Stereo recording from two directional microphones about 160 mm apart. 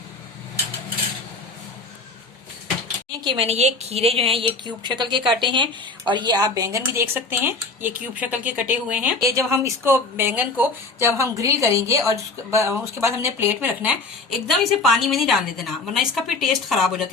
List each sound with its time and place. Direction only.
3.2 s a woman's voice: 25° right (ahead or behind)
3.4 s a woman's voice: 40° right (ahead or behind); by 13.9 s 15° right (ahead or behind)
14.3 s a woman's voice: centre (ahead or behind)